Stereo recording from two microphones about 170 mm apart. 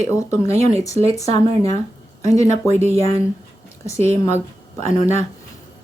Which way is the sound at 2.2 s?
20° left (ahead or behind).